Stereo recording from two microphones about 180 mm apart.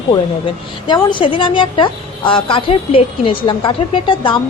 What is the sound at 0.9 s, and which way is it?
A woman's voice, 25° left (ahead or behind).